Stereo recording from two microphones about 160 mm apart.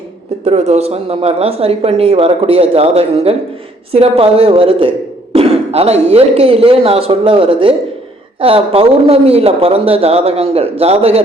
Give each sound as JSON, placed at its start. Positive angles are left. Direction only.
{"t": 0.4, "sound": "speech", "side_deg": -45}